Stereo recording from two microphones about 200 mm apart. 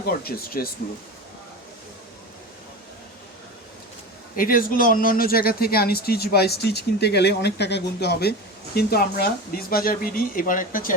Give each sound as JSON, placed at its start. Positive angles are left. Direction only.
{"t": 0.0, "sound": "speech", "side_deg": 50}
{"t": 4.4, "sound": "speech", "side_deg": 45}